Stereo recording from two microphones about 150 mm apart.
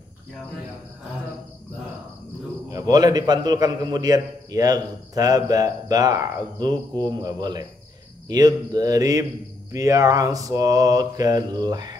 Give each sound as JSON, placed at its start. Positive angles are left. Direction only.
{"t": 2.7, "sound": "a man's voice", "side_deg": -25}